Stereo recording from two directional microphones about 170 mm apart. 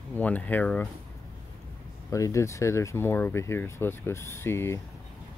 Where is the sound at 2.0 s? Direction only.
20° left (ahead or behind).